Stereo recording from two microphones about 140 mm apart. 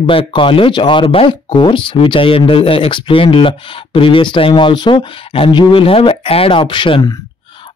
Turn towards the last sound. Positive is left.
turn(degrees=35)  # may be behind; listen again after turning